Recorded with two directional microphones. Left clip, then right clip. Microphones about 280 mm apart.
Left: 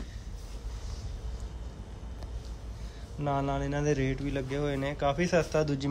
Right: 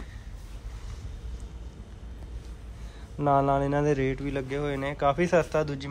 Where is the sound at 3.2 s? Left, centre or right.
Centre.